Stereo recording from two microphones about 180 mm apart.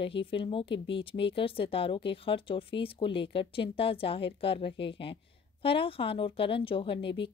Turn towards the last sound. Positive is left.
turn(degrees=30)  # may be behind; listen again after turning